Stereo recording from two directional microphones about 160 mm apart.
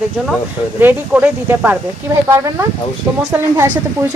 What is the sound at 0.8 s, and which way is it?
Speech, 10° right (ahead or behind).